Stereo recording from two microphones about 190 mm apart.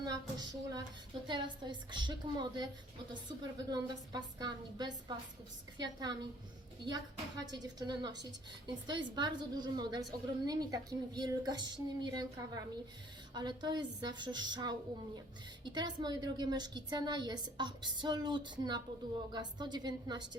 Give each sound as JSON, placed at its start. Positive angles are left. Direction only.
{"t": 0.0, "sound": "a woman's voice", "side_deg": -20}